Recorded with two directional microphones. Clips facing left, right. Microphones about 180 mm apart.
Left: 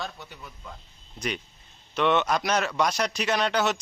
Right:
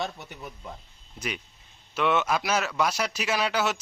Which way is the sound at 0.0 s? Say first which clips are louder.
Right 4 dB; 20° right (ahead or behind).